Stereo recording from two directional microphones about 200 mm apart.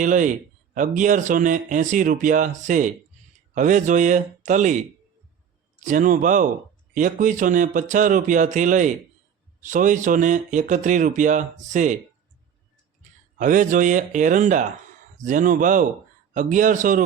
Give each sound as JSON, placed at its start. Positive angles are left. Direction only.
{"t": 0.0, "sound": "speech", "side_deg": -40}
{"t": 5.8, "sound": "speech", "side_deg": -40}
{"t": 13.4, "sound": "speech", "side_deg": -40}